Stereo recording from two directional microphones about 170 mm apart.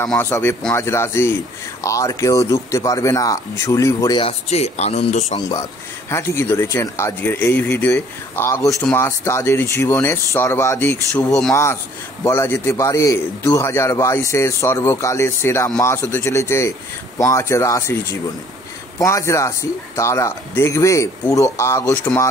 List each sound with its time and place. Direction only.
0.2 s a man's voice: 15° left (ahead or behind)
4.2 s speech: 35° left (ahead or behind)
5.5 s a man's voice: 20° left (ahead or behind)